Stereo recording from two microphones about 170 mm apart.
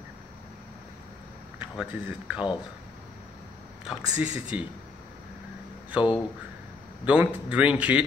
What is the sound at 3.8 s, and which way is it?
Speech, 5° right (ahead or behind).